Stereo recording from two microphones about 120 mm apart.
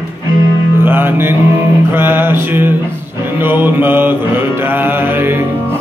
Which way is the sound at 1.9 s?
20° right (ahead or behind).